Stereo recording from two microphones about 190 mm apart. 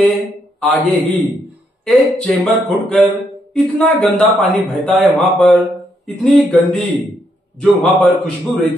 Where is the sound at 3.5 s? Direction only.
5° left (ahead or behind).